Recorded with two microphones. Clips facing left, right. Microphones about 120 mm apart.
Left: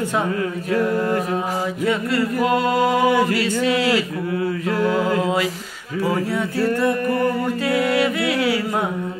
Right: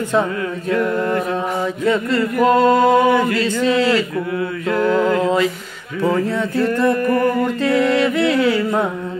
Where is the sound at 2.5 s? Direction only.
30° right (ahead or behind).